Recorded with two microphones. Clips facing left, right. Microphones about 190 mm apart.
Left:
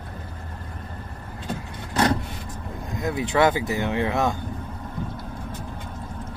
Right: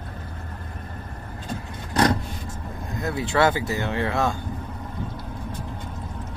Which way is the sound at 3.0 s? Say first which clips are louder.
Left 1 dB; 15° left (ahead or behind).